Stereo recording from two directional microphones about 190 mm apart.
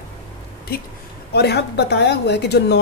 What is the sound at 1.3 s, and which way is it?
A woman's voice, 60° left (ahead or behind).